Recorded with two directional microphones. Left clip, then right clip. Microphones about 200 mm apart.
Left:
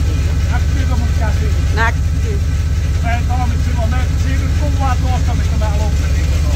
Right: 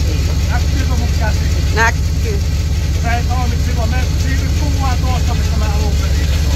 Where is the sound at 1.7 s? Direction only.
15° right (ahead or behind).